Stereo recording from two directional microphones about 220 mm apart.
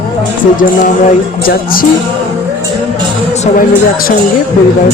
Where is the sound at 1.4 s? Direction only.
40° left (ahead or behind).